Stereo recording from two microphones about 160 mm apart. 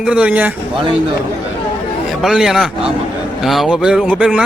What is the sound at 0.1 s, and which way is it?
Speech, 10° right (ahead or behind).